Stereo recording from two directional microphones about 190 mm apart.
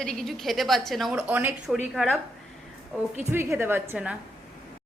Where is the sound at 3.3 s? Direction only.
10° right (ahead or behind).